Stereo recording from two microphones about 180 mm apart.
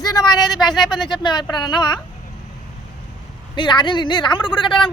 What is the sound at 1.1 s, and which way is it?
Speech, 25° left (ahead or behind).